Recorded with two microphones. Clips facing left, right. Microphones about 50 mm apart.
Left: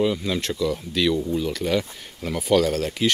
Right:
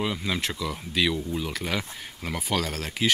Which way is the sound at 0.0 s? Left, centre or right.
Centre.